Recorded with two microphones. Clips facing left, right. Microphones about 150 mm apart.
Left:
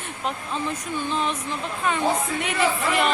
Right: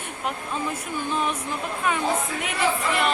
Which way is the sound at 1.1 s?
10° right (ahead or behind).